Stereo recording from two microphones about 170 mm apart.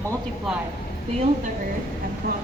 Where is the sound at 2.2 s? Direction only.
65° right (ahead or behind).